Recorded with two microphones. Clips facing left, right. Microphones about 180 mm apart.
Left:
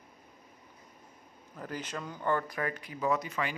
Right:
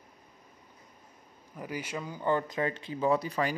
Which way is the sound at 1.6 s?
10° right (ahead or behind).